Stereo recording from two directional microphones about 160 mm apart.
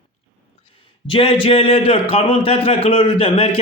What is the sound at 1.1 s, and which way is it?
A man's voice, 35° left (ahead or behind).